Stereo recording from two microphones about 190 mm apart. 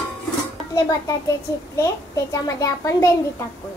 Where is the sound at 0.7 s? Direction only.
20° left (ahead or behind).